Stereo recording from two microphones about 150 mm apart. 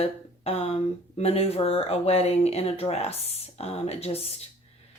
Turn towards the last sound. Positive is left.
turn(degrees=45)  # may be behind; listen again after turning